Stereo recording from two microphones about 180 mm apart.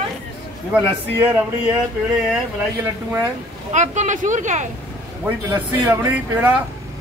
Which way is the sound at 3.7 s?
40° right (ahead or behind).